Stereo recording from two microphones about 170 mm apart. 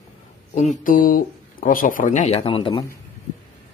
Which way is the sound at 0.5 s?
45° left (ahead or behind).